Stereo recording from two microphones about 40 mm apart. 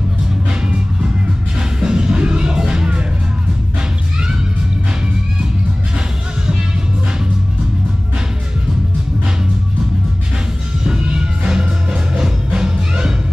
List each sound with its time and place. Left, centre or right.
1.6 s music: centre
10.8 s music: right